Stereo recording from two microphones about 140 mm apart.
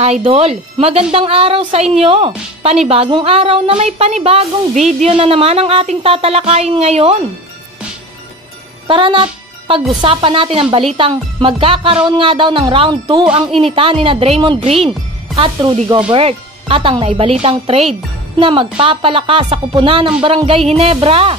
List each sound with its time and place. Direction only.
0.0 s speech: 50° right (ahead or behind)
8.8 s speech: 35° right (ahead or behind)